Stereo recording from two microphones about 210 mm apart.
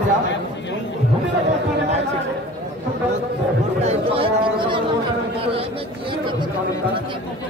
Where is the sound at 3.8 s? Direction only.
25° right (ahead or behind).